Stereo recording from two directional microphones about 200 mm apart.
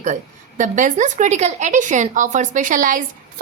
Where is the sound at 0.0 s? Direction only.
40° right (ahead or behind).